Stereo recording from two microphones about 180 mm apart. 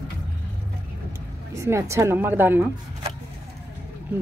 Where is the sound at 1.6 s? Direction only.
15° right (ahead or behind).